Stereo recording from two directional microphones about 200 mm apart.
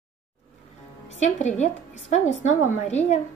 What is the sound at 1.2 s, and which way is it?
Speech, 35° left (ahead or behind).